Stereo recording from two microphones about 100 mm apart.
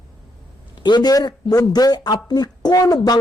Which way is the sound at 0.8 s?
50° left (ahead or behind).